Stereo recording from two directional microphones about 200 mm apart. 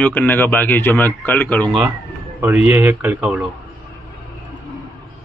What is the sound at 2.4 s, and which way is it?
Speech, 10° right (ahead or behind).